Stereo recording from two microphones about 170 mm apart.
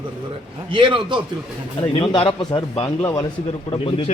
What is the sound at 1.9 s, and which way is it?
A man's voice, 30° left (ahead or behind).